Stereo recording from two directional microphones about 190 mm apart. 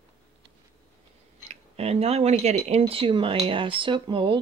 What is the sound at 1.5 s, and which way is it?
Speech, 30° right (ahead or behind).